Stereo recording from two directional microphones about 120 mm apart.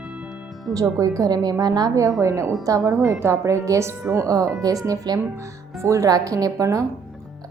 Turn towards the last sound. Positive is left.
turn(degrees=-25)  # may be behind; listen again after turning